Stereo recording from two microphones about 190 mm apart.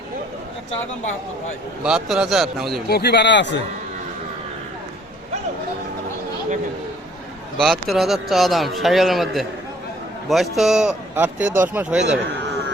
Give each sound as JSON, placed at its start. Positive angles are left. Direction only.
{"t": 1.8, "sound": "speech", "side_deg": -5}
{"t": 2.8, "sound": "speech", "side_deg": 60}
{"t": 7.6, "sound": "speech", "side_deg": 0}